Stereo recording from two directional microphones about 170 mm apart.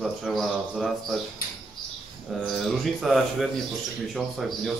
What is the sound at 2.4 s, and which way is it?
Speech, centre (ahead or behind).